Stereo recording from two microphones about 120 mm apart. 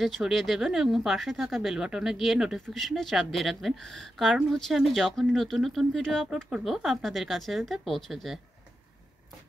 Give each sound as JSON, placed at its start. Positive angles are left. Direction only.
{"t": 0.0, "sound": "speech", "side_deg": 0}